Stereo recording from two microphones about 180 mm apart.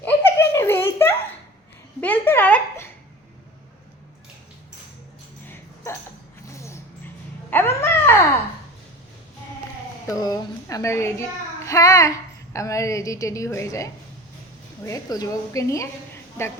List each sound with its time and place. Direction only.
0.0 s giggle: 15° left (ahead or behind)
2.0 s a sound: 10° left (ahead or behind)
5.5 s music: 15° left (ahead or behind)
7.5 s dog: 10° left (ahead or behind)
10.1 s a child's voice: 20° left (ahead or behind)